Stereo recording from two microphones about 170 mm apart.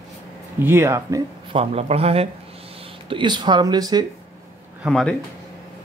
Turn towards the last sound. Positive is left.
turn(degrees=0)  # may be behind; listen again after turning